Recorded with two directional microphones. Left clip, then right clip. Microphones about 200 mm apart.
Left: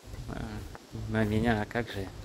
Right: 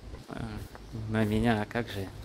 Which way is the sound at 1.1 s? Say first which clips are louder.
Even; 10° right (ahead or behind).